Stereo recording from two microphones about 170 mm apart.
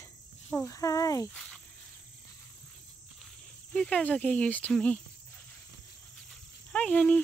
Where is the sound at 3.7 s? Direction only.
5° left (ahead or behind).